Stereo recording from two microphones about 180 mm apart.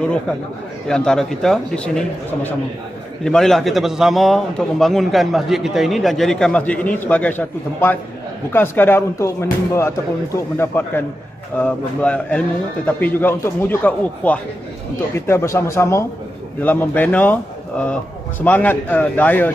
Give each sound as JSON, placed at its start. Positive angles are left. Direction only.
{"t": 0.8, "sound": "a man's voice", "side_deg": 5}